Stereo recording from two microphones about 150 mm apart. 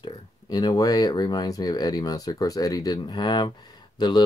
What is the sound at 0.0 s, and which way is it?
Speech, 25° left (ahead or behind).